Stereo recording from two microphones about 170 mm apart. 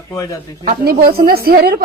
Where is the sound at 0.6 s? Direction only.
60° right (ahead or behind).